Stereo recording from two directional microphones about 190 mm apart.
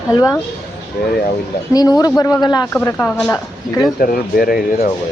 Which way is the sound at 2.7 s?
10° left (ahead or behind).